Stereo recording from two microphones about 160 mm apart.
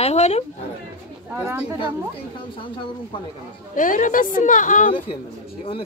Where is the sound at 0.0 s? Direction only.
40° left (ahead or behind).